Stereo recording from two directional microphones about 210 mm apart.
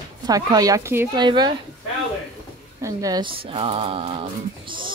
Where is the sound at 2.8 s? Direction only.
15° right (ahead or behind).